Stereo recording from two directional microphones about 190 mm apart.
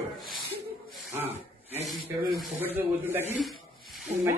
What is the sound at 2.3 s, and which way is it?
Speech, 5° right (ahead or behind).